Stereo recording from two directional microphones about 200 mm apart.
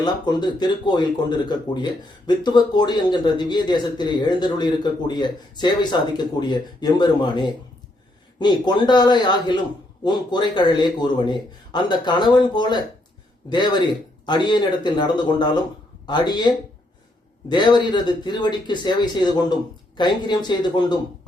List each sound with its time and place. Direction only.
0.0 s speech: 20° left (ahead or behind)
17.5 s speech: 20° left (ahead or behind)